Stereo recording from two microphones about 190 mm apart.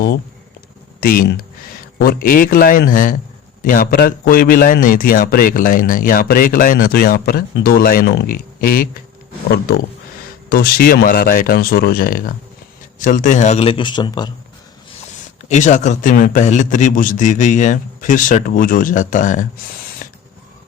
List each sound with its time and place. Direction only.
1.0 s a man's voice: 50° left (ahead or behind)
10.5 s a man's voice: 50° left (ahead or behind); by 14.3 s 20° left (ahead or behind)
15.4 s a man's voice: 40° left (ahead or behind)